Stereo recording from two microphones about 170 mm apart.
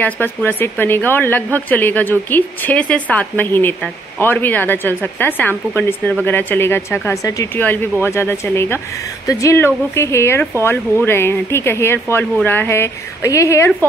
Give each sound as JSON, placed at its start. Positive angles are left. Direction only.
{"t": 0.0, "sound": "speech", "side_deg": 10}